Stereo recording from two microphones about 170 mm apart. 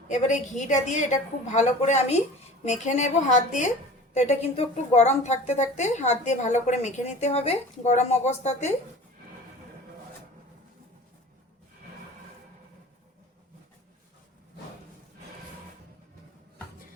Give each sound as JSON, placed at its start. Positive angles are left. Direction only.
{"t": 0.1, "sound": "a woman's voice", "side_deg": 45}